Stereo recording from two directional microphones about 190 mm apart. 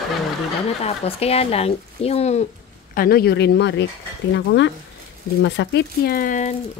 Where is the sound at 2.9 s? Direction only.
50° left (ahead or behind).